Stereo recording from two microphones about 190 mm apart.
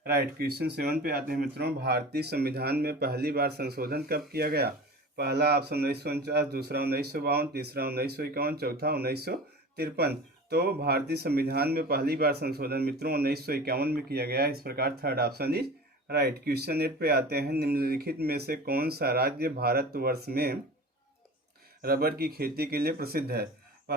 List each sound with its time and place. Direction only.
0.0 s speech: 55° right (ahead or behind)
21.8 s speech: 50° right (ahead or behind)